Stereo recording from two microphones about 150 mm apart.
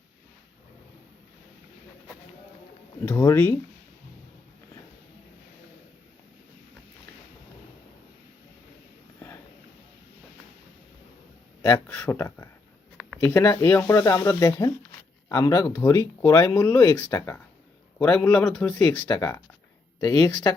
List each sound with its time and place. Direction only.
3.1 s speech: 15° left (ahead or behind)
9.1 s a sound: 20° left (ahead or behind)
11.6 s speech: 15° left (ahead or behind)